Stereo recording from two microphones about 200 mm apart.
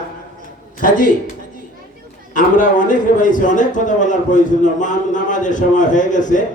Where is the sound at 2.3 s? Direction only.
40° left (ahead or behind).